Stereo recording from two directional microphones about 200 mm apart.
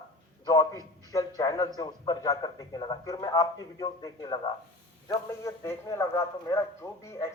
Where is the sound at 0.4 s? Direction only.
15° left (ahead or behind).